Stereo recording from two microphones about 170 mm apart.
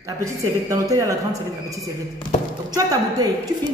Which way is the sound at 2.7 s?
20° right (ahead or behind).